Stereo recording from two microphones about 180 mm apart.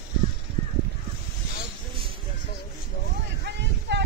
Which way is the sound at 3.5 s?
70° right (ahead or behind).